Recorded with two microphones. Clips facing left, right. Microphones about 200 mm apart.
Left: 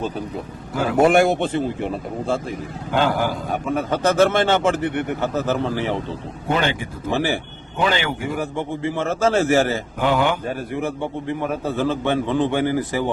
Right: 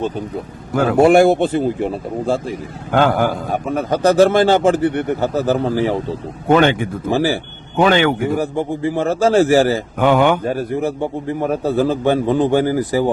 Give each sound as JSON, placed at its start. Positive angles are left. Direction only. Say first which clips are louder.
{"t": 0.7, "sound": "speech", "louder": "right 6 dB", "side_deg": -55}
{"t": 0.9, "sound": "a man's voice", "louder": "right 5 dB", "side_deg": -30}
{"t": 2.9, "sound": "a man's voice", "louder": "right 5 dB", "side_deg": -55}
{"t": 3.7, "sound": "a man's voice", "louder": "right 5 dB", "side_deg": -40}
{"t": 6.5, "sound": "speech", "louder": "right 9 dB", "side_deg": -55}
{"t": 7.1, "sound": "a man's voice", "louder": "right 4 dB", "side_deg": -35}
{"t": 7.8, "sound": "speech", "louder": "right 8 dB", "side_deg": -55}
{"t": 8.4, "sound": "a man's voice", "louder": "right 5 dB", "side_deg": -35}
{"t": 10.0, "sound": "speech", "louder": "right 6 dB", "side_deg": -55}
{"t": 10.4, "sound": "a man's voice", "louder": "right 6 dB", "side_deg": -40}